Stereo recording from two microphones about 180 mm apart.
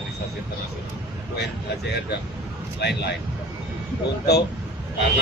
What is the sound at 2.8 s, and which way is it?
Speech, 70° left (ahead or behind).